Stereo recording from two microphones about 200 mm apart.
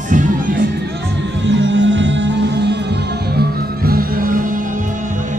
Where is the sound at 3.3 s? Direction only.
45° right (ahead or behind).